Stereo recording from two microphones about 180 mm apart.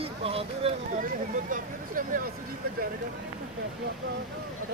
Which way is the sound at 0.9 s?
50° right (ahead or behind).